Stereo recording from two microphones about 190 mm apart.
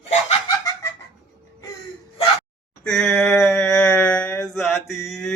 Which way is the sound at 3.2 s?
15° left (ahead or behind).